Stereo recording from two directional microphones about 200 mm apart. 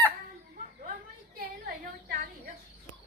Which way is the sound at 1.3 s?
50° right (ahead or behind).